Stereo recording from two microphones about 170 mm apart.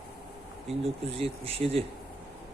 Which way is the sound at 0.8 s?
35° right (ahead or behind).